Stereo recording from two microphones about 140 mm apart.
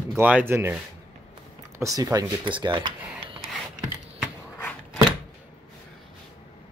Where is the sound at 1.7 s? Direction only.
25° right (ahead or behind).